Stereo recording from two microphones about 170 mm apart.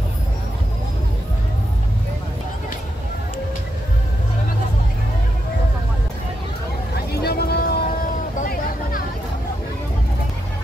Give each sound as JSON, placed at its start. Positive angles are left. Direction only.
{"t": 7.1, "sound": "vehicle", "side_deg": 70}